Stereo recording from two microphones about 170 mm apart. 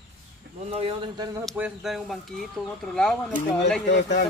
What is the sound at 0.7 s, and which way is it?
Speech, 35° right (ahead or behind).